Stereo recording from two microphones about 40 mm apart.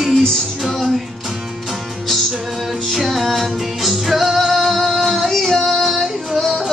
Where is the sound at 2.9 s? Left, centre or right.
Centre.